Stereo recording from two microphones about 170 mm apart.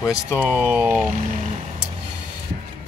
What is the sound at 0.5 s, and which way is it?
Speech, 10° right (ahead or behind).